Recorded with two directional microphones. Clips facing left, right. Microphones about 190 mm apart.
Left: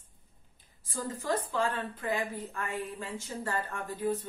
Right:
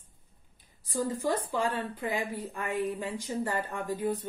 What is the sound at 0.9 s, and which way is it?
A woman's voice, 15° right (ahead or behind).